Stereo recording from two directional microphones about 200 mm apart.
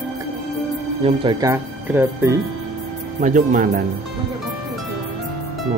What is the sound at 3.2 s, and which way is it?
Speech, 40° right (ahead or behind).